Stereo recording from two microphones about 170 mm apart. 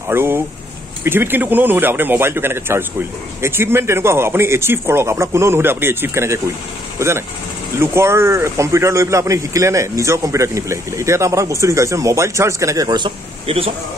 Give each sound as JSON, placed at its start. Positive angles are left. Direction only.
{"t": 0.1, "sound": "speech", "side_deg": -15}